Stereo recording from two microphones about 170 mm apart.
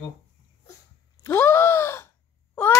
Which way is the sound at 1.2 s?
15° left (ahead or behind).